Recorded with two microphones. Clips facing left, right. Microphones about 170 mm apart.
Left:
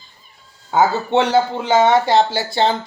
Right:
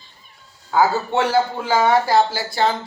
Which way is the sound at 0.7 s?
20° left (ahead or behind).